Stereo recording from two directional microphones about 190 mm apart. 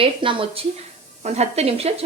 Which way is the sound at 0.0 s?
25° right (ahead or behind).